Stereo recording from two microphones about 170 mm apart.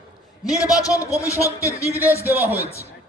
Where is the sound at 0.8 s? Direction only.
20° left (ahead or behind).